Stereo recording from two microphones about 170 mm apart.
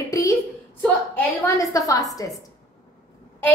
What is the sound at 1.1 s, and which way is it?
Speech, 15° left (ahead or behind).